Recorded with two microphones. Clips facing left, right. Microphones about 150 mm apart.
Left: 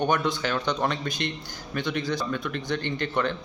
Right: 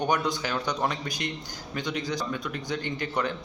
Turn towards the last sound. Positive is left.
turn(degrees=-10)  # may be behind; listen again after turning